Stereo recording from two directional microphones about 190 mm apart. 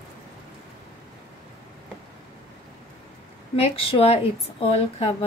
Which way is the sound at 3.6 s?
30° left (ahead or behind).